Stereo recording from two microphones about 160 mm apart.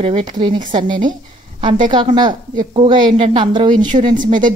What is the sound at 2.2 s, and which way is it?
A woman's voice, 30° right (ahead or behind).